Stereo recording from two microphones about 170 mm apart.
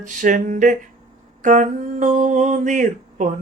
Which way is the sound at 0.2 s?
50° right (ahead or behind).